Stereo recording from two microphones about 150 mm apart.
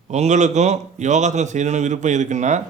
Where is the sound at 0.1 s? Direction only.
50° right (ahead or behind).